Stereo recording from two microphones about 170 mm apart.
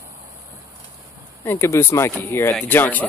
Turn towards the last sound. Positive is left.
turn(degrees=10)  # may be behind; listen again after turning